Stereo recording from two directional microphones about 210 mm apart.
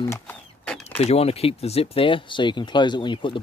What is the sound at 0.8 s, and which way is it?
Speech, 30° left (ahead or behind).